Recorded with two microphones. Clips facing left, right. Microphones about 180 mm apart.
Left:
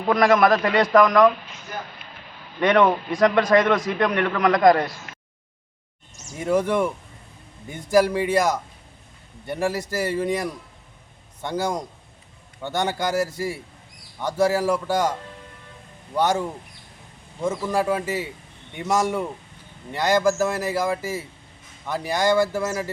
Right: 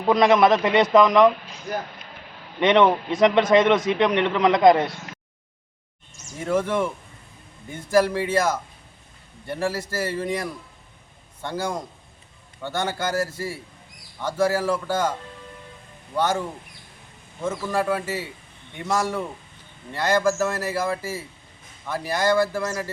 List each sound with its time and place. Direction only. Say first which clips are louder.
0.0 s a man's voice: right 1 dB; 20° right (ahead or behind)
2.6 s a man's voice: right 1 dB; 20° right (ahead or behind)
6.4 s a man's voice: left 2 dB; 15° left (ahead or behind)
16.1 s a man's voice: left 2 dB; 15° left (ahead or behind)
17.7 s a man's voice: even; 20° left (ahead or behind)